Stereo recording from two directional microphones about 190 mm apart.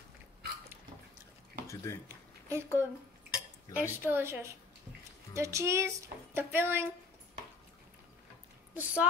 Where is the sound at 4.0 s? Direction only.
10° right (ahead or behind).